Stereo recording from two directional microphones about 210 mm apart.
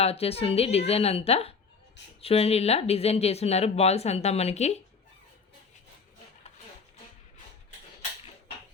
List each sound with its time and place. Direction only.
0.0 s speech: 30° left (ahead or behind)